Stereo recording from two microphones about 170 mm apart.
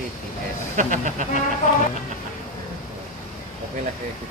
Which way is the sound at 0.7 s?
50° right (ahead or behind).